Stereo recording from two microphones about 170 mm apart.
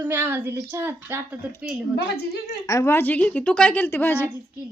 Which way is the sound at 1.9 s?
65° left (ahead or behind).